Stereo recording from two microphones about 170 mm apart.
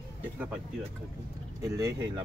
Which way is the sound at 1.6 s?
20° right (ahead or behind).